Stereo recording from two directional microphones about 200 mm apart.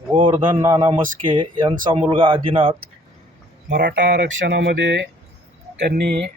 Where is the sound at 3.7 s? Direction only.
55° right (ahead or behind).